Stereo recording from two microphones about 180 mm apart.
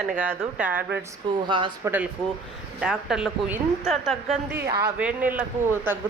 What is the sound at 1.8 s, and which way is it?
A woman's voice, 10° right (ahead or behind).